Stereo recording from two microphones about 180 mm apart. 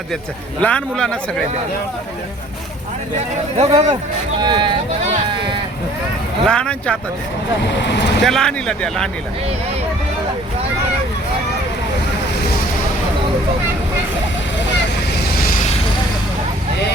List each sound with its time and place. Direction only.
0.6 s speech: 5° left (ahead or behind)
3.6 s speech: 30° right (ahead or behind)
6.4 s speech: 5° left (ahead or behind)
7.6 s speech: 75° left (ahead or behind)
8.2 s speech: centre (ahead or behind)